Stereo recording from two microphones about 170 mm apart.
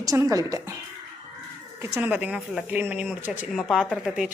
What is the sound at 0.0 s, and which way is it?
Speech, 20° right (ahead or behind).